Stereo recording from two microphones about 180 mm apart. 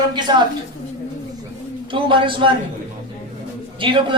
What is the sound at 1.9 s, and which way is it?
Speech, 30° right (ahead or behind).